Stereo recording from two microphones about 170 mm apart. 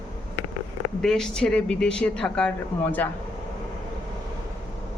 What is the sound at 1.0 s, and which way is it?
Speech, 5° left (ahead or behind).